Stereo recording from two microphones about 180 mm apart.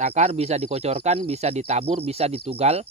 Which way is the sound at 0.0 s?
40° right (ahead or behind).